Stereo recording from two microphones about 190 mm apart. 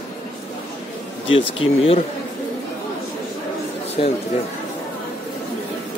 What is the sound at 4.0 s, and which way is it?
Speech, 30° left (ahead or behind).